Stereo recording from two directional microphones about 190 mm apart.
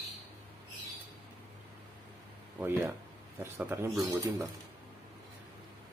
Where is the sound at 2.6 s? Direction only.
10° right (ahead or behind).